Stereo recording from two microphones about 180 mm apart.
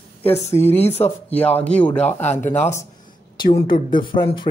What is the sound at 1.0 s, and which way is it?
Speech, 10° left (ahead or behind).